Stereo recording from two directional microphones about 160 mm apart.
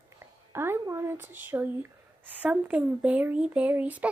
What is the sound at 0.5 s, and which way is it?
Speech, 15° right (ahead or behind).